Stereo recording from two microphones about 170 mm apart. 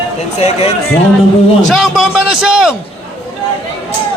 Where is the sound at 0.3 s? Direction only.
40° left (ahead or behind).